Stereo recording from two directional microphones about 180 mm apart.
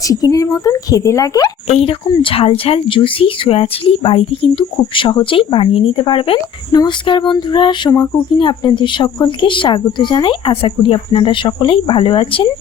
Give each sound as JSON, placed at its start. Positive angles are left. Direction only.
{"t": 0.1, "sound": "speech", "side_deg": 20}
{"t": 1.6, "sound": "speech", "side_deg": 35}